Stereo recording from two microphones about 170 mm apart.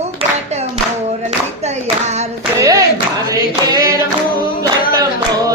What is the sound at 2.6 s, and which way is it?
Clapping, 20° right (ahead or behind).